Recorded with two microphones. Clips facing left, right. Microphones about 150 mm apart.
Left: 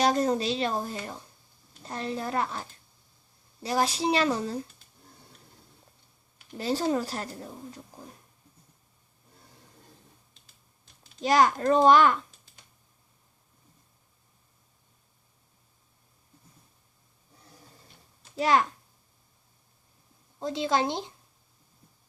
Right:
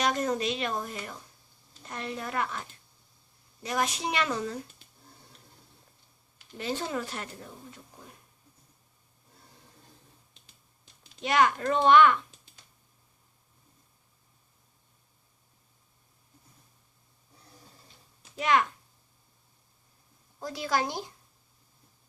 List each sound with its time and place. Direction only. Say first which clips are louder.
0.0 s a woman's voice: left 4 dB; 35° left (ahead or behind)
6.6 s a woman's voice: left 5 dB; 35° left (ahead or behind)
11.2 s a woman's voice: left 3 dB; 35° left (ahead or behind)
18.3 s a woman's voice: left 2 dB; 35° left (ahead or behind)
20.4 s a woman's voice: left 3 dB; 25° left (ahead or behind)